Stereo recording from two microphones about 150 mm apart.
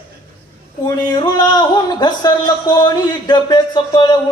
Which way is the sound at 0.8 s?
30° left (ahead or behind).